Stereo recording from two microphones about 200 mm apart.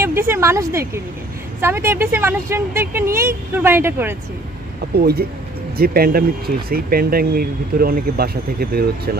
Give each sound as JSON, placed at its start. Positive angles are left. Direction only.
{"t": 0.0, "sound": "speech", "side_deg": -10}
{"t": 4.9, "sound": "speech", "side_deg": -50}